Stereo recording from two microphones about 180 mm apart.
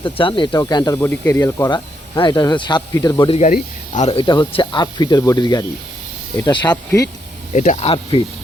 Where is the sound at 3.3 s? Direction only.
35° left (ahead or behind).